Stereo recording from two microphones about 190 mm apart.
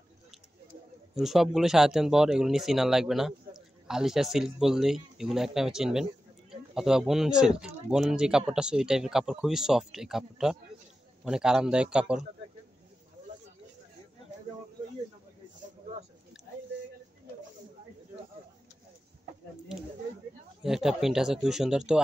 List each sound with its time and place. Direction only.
1.1 s speech: centre (ahead or behind)
20.6 s speech: 5° right (ahead or behind)